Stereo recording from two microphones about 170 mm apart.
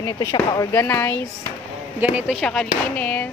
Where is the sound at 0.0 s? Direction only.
20° left (ahead or behind).